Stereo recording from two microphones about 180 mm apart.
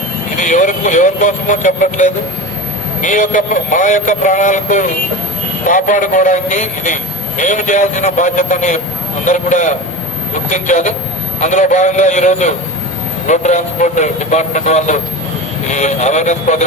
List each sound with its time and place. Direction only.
0.3 s a man's voice: 45° left (ahead or behind)